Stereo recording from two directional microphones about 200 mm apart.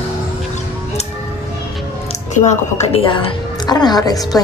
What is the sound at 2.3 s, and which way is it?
A woman's voice, 35° left (ahead or behind).